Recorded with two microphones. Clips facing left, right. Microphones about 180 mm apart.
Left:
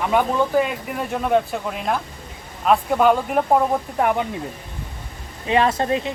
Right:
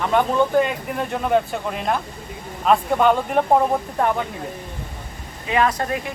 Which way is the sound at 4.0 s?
15° left (ahead or behind).